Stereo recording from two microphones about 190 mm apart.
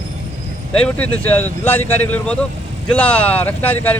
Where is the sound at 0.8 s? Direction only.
5° left (ahead or behind).